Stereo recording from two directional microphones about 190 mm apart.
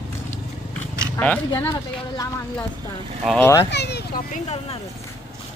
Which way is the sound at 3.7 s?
60° left (ahead or behind).